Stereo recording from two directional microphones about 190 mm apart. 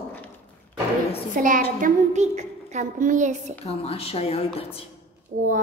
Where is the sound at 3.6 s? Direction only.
30° left (ahead or behind).